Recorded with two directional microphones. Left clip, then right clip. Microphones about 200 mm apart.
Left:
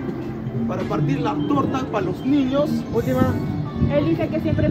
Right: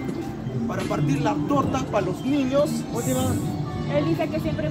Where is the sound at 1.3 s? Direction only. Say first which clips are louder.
Even; 10° right (ahead or behind).